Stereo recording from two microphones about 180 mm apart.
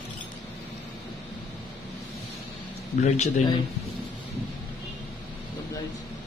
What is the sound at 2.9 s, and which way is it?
Speech, 40° left (ahead or behind).